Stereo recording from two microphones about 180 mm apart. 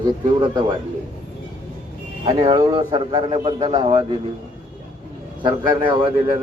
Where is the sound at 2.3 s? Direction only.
25° right (ahead or behind).